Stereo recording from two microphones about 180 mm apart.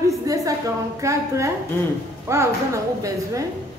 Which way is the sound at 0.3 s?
15° right (ahead or behind).